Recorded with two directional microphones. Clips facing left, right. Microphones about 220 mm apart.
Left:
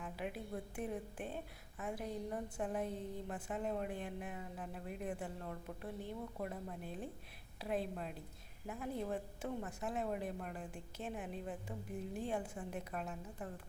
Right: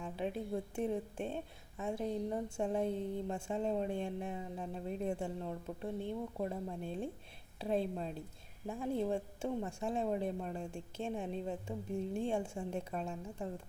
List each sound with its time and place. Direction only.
0.0 s a woman's voice: 30° right (ahead or behind)
8.6 s a woman's voice: 30° right (ahead or behind)